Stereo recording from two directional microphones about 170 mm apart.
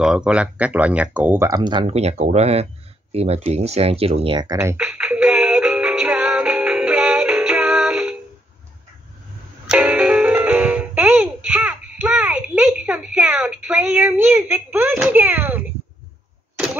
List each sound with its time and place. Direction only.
0.0 s speech: 5° right (ahead or behind); by 2.0 s 25° right (ahead or behind)
2.0 s speech: 40° right (ahead or behind); by 4.7 s 20° right (ahead or behind)
4.7 s music: 5° right (ahead or behind)
9.7 s music: 10° right (ahead or behind)